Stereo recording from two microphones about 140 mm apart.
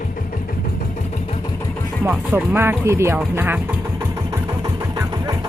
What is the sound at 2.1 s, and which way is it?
Speech, 15° right (ahead or behind).